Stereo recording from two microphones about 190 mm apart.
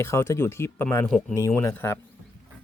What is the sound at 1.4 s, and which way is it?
Speech, 15° left (ahead or behind).